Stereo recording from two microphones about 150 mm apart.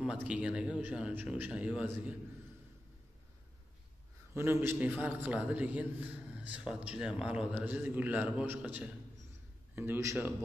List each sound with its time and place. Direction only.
0.0 s a man's voice: 5° right (ahead or behind)
4.3 s a man's voice: 15° right (ahead or behind)